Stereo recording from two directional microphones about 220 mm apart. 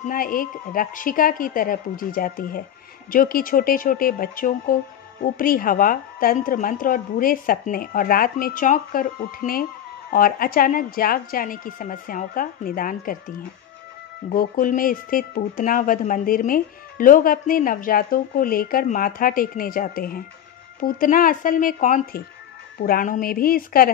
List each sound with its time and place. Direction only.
0.0 s speech: 40° left (ahead or behind)